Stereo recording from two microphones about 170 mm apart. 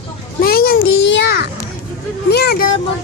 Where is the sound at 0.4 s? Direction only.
60° left (ahead or behind); by 1.5 s 90° left.